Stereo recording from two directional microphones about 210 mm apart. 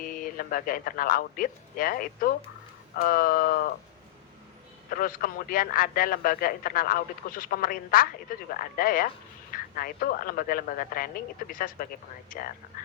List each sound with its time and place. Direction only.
0.0 s a man's voice: 40° left (ahead or behind)
4.9 s a man's voice: 40° left (ahead or behind)